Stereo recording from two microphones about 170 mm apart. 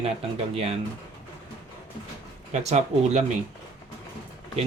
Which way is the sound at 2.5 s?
40° right (ahead or behind).